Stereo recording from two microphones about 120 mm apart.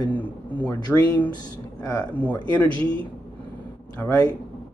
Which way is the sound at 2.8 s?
45° right (ahead or behind).